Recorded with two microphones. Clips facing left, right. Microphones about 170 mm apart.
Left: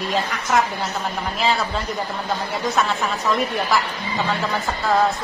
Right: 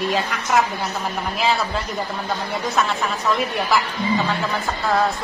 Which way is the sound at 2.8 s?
Centre (ahead or behind).